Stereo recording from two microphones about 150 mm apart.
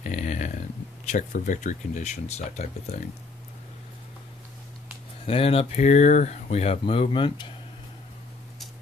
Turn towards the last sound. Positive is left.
turn(degrees=35)  # may be behind; listen again after turning